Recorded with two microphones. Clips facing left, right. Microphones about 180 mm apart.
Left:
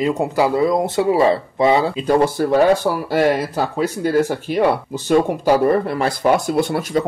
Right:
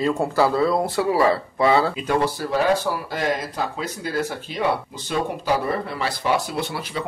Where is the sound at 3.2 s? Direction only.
60° left (ahead or behind).